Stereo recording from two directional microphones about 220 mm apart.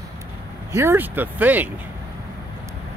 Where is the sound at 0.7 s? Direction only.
10° right (ahead or behind).